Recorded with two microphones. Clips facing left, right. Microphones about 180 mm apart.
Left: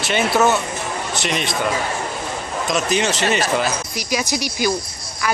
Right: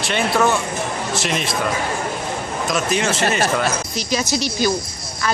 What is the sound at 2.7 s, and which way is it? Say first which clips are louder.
Speech: left 1 dB; centre (ahead or behind).